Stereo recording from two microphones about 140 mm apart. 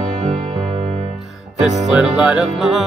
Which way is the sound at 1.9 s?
10° right (ahead or behind).